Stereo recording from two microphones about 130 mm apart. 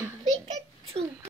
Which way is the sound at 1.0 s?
50° right (ahead or behind).